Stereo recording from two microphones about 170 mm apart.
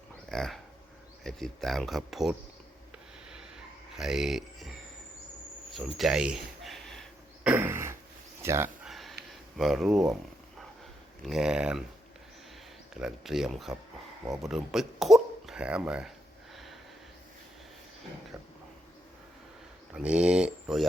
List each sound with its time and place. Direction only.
0.3 s speech: centre (ahead or behind)
3.9 s speech: 5° right (ahead or behind)
6.0 s a sound: 5° right (ahead or behind)
7.5 s a sound: 15° right (ahead or behind)
8.4 s speech: 15° right (ahead or behind)
8.9 s a sound: centre (ahead or behind)
9.6 s speech: centre (ahead or behind)
11.2 s speech: centre (ahead or behind)
12.9 s speech: 5° right (ahead or behind)
19.9 s speech: 5° right (ahead or behind)